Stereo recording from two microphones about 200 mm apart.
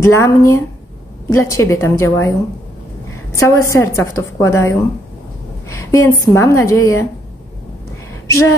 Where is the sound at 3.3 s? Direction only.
15° left (ahead or behind).